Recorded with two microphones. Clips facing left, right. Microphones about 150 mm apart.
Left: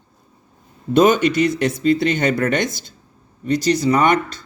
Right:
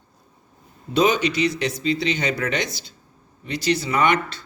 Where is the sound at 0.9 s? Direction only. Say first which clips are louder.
Left 5 dB; 50° left (ahead or behind).